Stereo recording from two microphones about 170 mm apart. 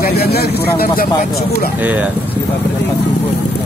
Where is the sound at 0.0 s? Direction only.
65° left (ahead or behind).